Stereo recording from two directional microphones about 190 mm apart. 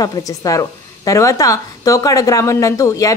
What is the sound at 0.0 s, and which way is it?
A woman's voice, 20° left (ahead or behind).